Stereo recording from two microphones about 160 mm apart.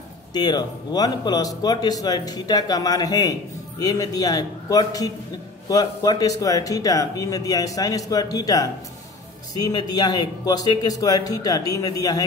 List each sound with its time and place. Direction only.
0.3 s speech: 25° left (ahead or behind)